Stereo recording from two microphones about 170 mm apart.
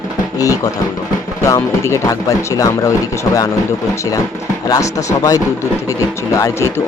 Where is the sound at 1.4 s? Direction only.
15° left (ahead or behind).